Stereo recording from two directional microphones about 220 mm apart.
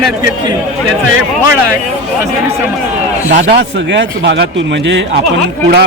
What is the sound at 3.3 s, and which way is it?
A man's voice, 45° right (ahead or behind).